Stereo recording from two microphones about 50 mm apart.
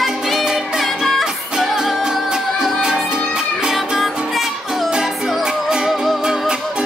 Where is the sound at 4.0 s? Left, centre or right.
Centre.